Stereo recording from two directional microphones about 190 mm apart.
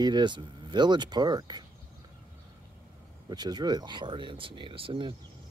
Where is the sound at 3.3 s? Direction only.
20° right (ahead or behind).